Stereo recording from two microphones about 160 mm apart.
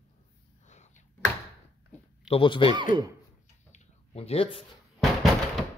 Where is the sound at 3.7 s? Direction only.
40° left (ahead or behind).